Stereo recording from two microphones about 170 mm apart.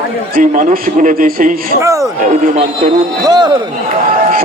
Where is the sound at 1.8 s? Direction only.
20° right (ahead or behind).